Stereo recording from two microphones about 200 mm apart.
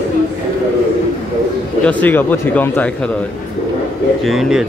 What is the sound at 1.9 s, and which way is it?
Speech, 10° left (ahead or behind).